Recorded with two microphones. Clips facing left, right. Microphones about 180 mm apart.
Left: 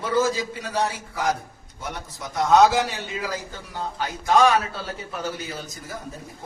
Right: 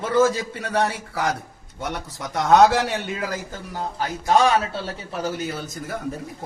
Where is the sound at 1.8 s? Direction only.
70° right (ahead or behind).